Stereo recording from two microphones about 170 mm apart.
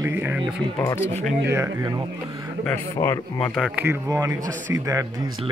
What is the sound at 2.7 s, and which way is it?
A man's voice, 15° left (ahead or behind).